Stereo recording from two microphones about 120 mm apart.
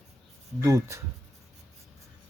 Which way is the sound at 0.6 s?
25° right (ahead or behind).